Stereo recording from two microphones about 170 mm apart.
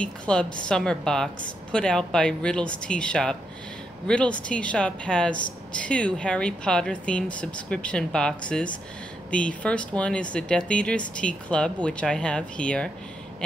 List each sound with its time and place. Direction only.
0.0 s a woman's voice: 5° left (ahead or behind)